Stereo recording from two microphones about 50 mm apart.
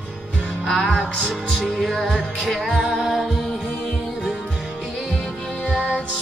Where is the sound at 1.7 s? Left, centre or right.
Centre.